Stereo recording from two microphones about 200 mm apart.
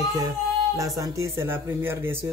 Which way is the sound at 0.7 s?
15° right (ahead or behind).